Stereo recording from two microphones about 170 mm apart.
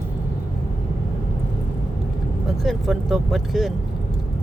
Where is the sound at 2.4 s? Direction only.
Centre (ahead or behind).